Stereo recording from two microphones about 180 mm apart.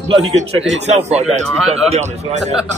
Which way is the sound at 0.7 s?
35° right (ahead or behind).